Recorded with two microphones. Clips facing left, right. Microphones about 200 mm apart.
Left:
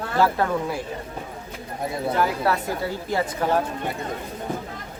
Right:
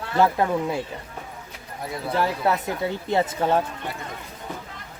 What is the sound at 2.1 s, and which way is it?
Speech, 25° right (ahead or behind).